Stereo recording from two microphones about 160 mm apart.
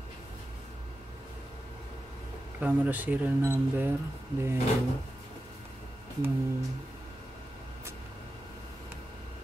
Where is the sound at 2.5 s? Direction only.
10° right (ahead or behind).